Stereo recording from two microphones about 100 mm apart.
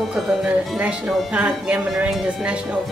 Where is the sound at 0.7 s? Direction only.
10° right (ahead or behind).